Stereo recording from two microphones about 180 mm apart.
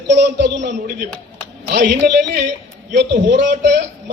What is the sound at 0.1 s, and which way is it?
Speech, 75° right (ahead or behind).